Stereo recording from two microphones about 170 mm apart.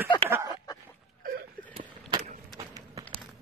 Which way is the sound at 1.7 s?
35° right (ahead or behind).